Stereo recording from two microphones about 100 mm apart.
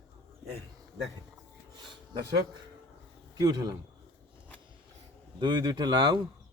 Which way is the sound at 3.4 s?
45° right (ahead or behind).